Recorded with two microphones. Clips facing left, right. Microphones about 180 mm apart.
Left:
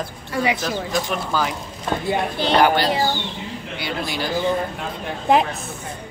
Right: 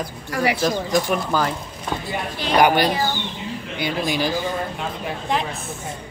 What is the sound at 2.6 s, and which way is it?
Speech, 15° right (ahead or behind).